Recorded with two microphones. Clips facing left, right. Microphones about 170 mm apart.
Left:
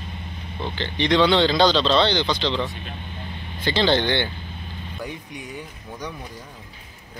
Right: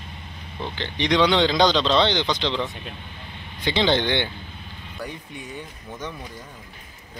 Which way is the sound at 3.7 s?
15° right (ahead or behind).